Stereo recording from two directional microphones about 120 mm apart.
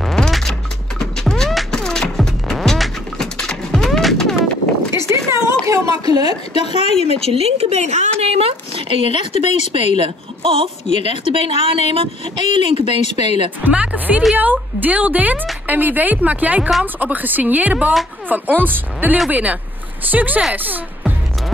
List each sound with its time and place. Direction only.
0.0 s a sound: 5° left (ahead or behind)
4.9 s a sound: 25° right (ahead or behind)
6.5 s speech: 60° left (ahead or behind)
7.1 s speech: 55° right (ahead or behind)
9.3 s speech: 70° left (ahead or behind)
9.9 s a woman's voice: 50° right (ahead or behind)
11.2 s speech: 65° left (ahead or behind)
12.5 s a woman's voice: 45° right (ahead or behind)
13.0 s speech: 65° left (ahead or behind)
13.7 s speech: 15° right (ahead or behind)